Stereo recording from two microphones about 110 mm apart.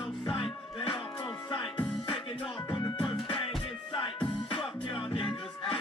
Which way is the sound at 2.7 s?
50° left (ahead or behind).